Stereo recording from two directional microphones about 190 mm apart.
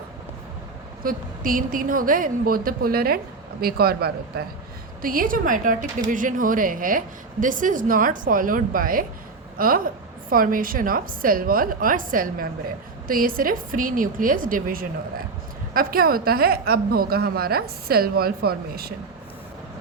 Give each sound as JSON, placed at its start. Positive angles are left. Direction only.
{"t": 1.0, "sound": "speech", "side_deg": -50}